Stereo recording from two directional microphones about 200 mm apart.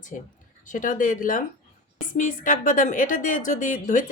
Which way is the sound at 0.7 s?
40° left (ahead or behind).